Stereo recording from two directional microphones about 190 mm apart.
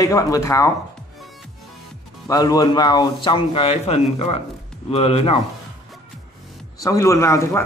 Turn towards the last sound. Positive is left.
turn(degrees=15)  # may be behind; listen again after turning